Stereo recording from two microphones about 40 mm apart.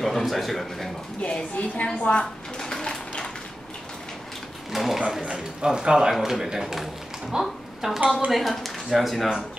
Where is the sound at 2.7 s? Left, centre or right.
Left.